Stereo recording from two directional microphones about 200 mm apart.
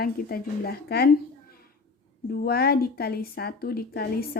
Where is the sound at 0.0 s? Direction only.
50° left (ahead or behind).